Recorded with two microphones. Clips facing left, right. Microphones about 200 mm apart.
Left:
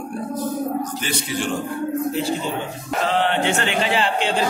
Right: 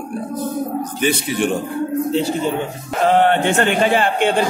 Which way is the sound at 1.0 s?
55° right (ahead or behind).